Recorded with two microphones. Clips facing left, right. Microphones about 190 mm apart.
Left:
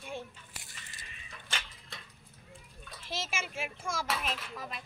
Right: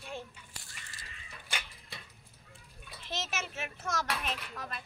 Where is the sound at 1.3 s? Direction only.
5° right (ahead or behind).